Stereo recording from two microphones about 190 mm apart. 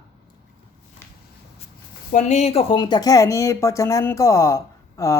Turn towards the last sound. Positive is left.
turn(degrees=15)  # may be behind; listen again after turning